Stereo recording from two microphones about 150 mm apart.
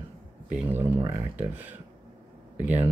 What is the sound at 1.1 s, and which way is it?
Speech, 10° right (ahead or behind).